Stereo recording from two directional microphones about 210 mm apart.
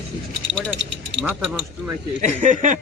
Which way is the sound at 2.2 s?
35° right (ahead or behind).